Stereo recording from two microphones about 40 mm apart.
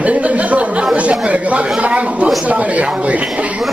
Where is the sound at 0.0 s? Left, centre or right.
Right.